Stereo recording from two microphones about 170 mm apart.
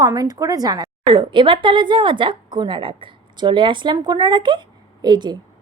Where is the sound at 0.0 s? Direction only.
20° right (ahead or behind).